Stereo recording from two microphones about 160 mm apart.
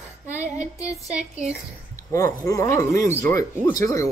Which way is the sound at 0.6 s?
20° left (ahead or behind).